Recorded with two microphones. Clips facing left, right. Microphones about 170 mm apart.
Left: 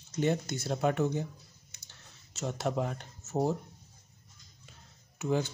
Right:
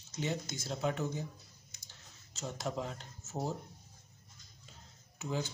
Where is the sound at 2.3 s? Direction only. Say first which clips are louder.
Left 6 dB; 70° left (ahead or behind).